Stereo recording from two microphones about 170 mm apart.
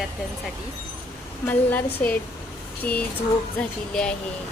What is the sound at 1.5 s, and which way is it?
Speech, 10° left (ahead or behind).